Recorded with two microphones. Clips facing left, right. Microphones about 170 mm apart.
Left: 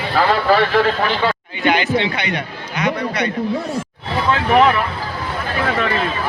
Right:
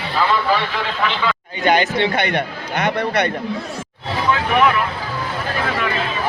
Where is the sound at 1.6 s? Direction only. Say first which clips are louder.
Even; 45° right (ahead or behind).